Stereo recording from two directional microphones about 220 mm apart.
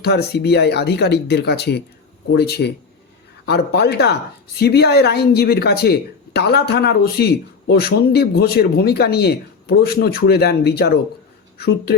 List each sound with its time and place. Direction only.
0.0 s speech: 45° left (ahead or behind)